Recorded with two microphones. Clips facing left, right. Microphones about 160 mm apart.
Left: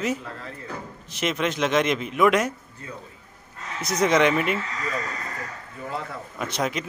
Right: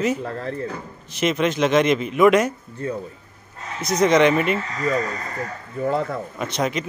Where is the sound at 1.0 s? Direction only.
Centre (ahead or behind).